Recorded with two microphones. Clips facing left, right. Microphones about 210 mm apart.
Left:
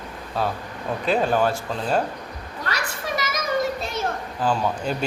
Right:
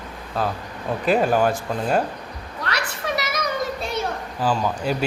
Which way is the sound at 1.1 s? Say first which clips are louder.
Right 2 dB; 5° right (ahead or behind).